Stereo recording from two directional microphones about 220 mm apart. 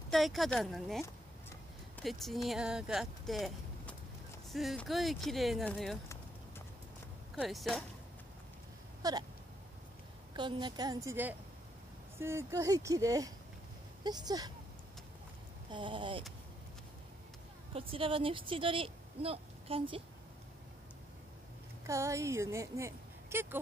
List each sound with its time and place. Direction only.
0.1 s speech: centre (ahead or behind)
7.3 s speech: centre (ahead or behind)
9.0 s a sound: 15° right (ahead or behind)
10.3 s speech: 20° right (ahead or behind)
15.7 s speech: 20° right (ahead or behind)
17.7 s speech: 25° right (ahead or behind)
21.8 s speech: 15° right (ahead or behind)